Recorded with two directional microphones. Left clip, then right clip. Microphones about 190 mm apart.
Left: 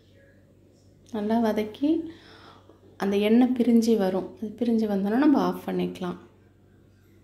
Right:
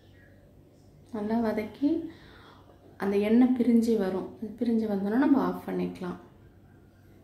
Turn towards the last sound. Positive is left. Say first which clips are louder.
# left 4 dB
turn(degrees=20)  # may be behind; listen again after turning